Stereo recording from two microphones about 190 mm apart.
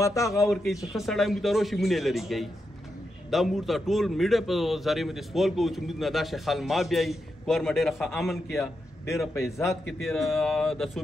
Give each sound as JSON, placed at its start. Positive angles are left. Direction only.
{"t": 0.0, "sound": "a man's voice", "side_deg": 15}
{"t": 0.9, "sound": "a man's voice", "side_deg": 0}
{"t": 9.3, "sound": "a man's voice", "side_deg": 15}
{"t": 10.0, "sound": "a man's voice", "side_deg": 0}